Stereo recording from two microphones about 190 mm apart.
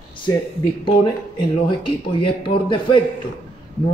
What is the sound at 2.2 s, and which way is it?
Speech, 25° left (ahead or behind).